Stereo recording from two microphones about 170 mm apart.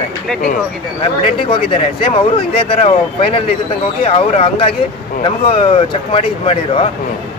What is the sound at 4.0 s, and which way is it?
Speech, 35° left (ahead or behind).